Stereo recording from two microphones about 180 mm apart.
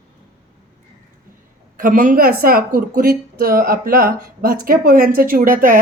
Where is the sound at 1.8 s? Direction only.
50° right (ahead or behind).